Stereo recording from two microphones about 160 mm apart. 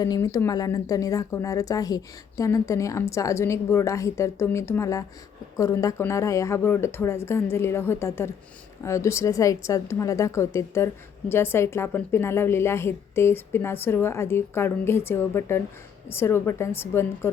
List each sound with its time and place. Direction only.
0.0 s a woman's voice: 20° left (ahead or behind)